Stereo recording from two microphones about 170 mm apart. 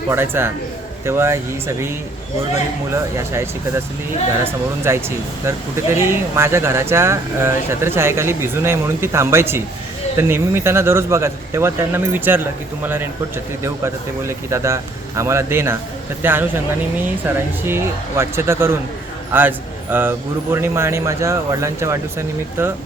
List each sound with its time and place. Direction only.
0.1 s speech: 15° right (ahead or behind)
2.9 s speech: 15° right (ahead or behind)